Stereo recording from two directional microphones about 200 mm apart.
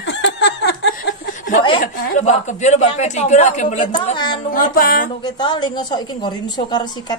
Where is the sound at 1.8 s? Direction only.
35° left (ahead or behind).